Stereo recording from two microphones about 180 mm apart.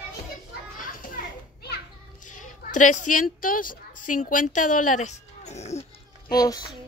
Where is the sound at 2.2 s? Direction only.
45° left (ahead or behind).